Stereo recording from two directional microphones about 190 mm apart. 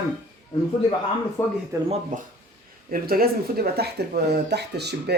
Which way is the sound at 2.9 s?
50° right (ahead or behind).